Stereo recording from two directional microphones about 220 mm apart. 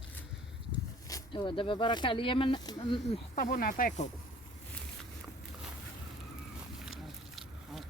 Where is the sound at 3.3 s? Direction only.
40° left (ahead or behind).